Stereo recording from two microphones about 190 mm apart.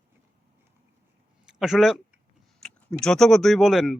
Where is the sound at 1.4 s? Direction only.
5° right (ahead or behind).